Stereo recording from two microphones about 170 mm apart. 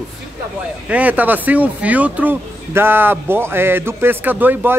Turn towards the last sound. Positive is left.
turn(degrees=-10)  # may be behind; listen again after turning